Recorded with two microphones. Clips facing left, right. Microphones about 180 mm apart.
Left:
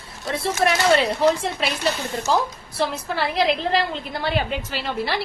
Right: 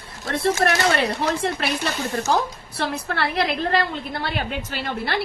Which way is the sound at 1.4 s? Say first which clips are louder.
Even; 60° right (ahead or behind).